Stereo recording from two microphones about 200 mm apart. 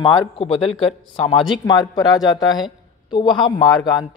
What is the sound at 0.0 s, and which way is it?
A woman's voice, 25° left (ahead or behind).